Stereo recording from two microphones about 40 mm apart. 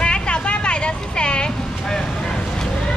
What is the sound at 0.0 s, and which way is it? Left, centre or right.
Vehicle, left.